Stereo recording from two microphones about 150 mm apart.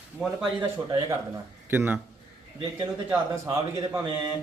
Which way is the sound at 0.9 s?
30° right (ahead or behind).